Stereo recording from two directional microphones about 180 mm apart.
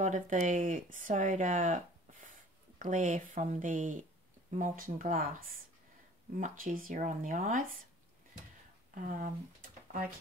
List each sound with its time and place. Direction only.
0.0 s speech: 45° right (ahead or behind)
8.9 s speech: 45° right (ahead or behind)